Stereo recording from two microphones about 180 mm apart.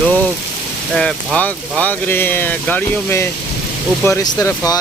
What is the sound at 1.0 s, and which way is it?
Speech, 5° left (ahead or behind).